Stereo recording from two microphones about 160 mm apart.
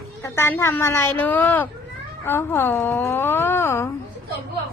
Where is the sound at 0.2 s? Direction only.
15° left (ahead or behind).